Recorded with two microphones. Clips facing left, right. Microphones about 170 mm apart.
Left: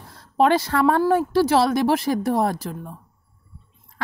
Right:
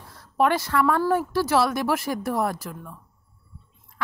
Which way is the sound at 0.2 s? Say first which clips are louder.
Left 4 dB; 30° left (ahead or behind).